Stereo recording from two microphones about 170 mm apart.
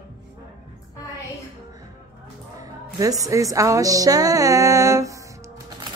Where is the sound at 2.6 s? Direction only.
20° right (ahead or behind).